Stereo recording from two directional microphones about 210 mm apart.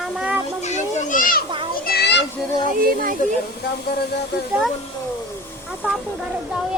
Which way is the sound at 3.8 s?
50° left (ahead or behind).